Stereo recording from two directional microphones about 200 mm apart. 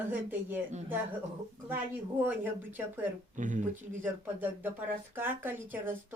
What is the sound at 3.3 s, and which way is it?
Speech, 40° right (ahead or behind).